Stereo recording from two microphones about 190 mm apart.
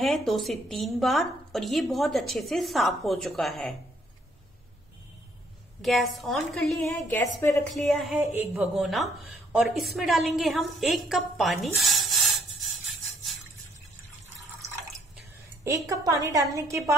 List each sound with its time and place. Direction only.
0.0 s a woman's voice: centre (ahead or behind)
5.8 s a woman's voice: centre (ahead or behind)
7.2 s a woman's voice: 15° left (ahead or behind)
7.7 s a woman's voice: centre (ahead or behind)
8.2 s a woman's voice: 15° right (ahead or behind)
8.7 s a woman's voice: centre (ahead or behind)
15.1 s a woman's voice: 15° right (ahead or behind)